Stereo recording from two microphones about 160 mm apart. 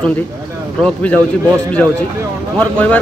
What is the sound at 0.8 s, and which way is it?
Speech, 10° left (ahead or behind).